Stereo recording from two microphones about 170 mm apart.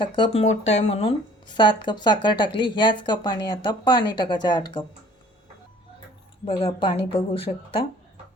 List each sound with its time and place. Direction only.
0.0 s speech: 30° left (ahead or behind)
0.4 s speech: 40° left (ahead or behind)
6.4 s speech: 30° left (ahead or behind)